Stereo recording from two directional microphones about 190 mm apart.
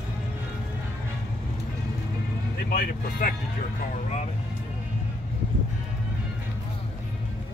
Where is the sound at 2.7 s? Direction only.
45° left (ahead or behind).